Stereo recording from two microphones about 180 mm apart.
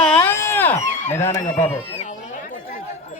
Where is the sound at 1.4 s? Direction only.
35° left (ahead or behind).